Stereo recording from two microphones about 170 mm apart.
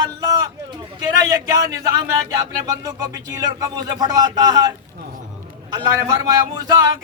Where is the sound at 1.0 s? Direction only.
20° right (ahead or behind).